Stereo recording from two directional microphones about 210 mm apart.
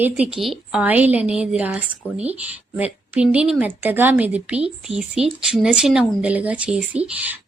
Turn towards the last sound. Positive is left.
turn(degrees=-5)  # may be behind; listen again after turning